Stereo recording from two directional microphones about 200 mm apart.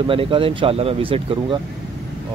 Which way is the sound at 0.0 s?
25° right (ahead or behind).